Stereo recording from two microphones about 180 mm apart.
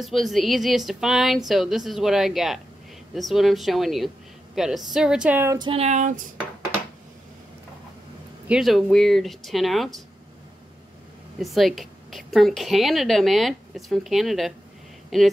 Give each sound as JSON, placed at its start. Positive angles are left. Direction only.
{"t": 0.0, "sound": "a woman's voice", "side_deg": 0}
{"t": 5.6, "sound": "a sound", "side_deg": -35}
{"t": 8.5, "sound": "a woman's voice", "side_deg": 0}
{"t": 11.3, "sound": "a woman's voice", "side_deg": 0}